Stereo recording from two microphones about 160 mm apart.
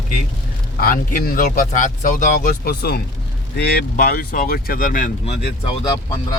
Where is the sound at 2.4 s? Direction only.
75° left (ahead or behind); by 5.3 s 55° left (ahead or behind).